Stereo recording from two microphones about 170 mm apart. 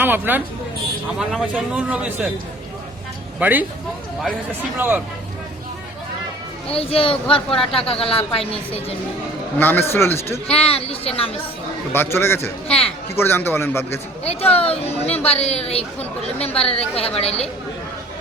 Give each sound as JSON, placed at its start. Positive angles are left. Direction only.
{"t": 0.0, "sound": "a man's voice", "side_deg": -10}
{"t": 3.4, "sound": "a man's voice", "side_deg": -10}
{"t": 4.8, "sound": "a man's voice", "side_deg": -10}
{"t": 6.7, "sound": "speech", "side_deg": 35}
{"t": 9.6, "sound": "a man's voice", "side_deg": 10}
{"t": 10.5, "sound": "speech", "side_deg": 35}
{"t": 11.9, "sound": "a man's voice", "side_deg": 15}
{"t": 12.6, "sound": "speech", "side_deg": 35}
{"t": 13.1, "sound": "a man's voice", "side_deg": 15}
{"t": 14.7, "sound": "speech", "side_deg": 35}